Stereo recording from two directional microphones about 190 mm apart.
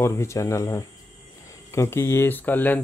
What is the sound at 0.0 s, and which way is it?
Speech, 15° left (ahead or behind).